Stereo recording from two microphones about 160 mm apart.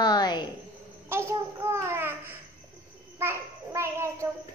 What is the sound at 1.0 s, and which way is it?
Babbling, 15° right (ahead or behind).